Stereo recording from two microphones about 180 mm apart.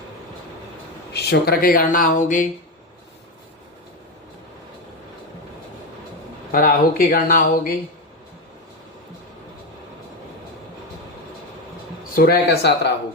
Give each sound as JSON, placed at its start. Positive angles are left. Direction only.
{"t": 1.1, "sound": "speech", "side_deg": 60}
{"t": 6.5, "sound": "speech", "side_deg": 50}
{"t": 12.1, "sound": "speech", "side_deg": 60}